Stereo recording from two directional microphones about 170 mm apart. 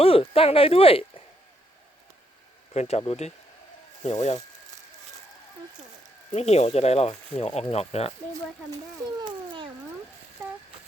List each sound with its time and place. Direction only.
0.0 s speech: 35° left (ahead or behind)
2.7 s speech: 40° left (ahead or behind)
6.3 s speech: 40° left (ahead or behind)
9.2 s cat: 30° right (ahead or behind)